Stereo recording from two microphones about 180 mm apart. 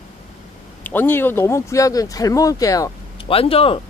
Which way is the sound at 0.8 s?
10° left (ahead or behind).